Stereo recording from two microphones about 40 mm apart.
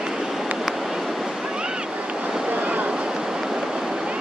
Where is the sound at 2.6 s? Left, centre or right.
Right.